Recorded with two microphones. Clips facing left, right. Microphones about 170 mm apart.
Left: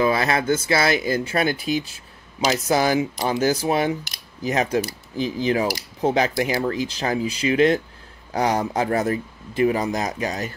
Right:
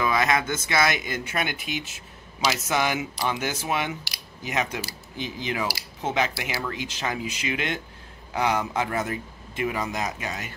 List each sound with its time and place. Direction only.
0.0 s speech: 30° left (ahead or behind)